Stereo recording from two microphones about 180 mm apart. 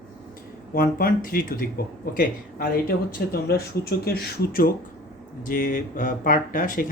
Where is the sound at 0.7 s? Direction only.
55° left (ahead or behind).